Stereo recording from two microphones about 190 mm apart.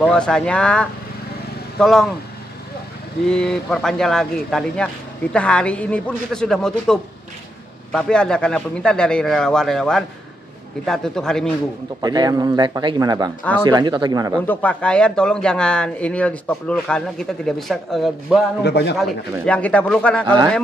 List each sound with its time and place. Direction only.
0.0 s speech: 5° left (ahead or behind)
3.3 s speech: 5° left (ahead or behind)
12.0 s speech: 20° right (ahead or behind)
14.4 s speech: 10° left (ahead or behind)
18.6 s a man's voice: 65° left (ahead or behind)
19.4 s speech: 5° left (ahead or behind)
20.2 s speech: 20° right (ahead or behind)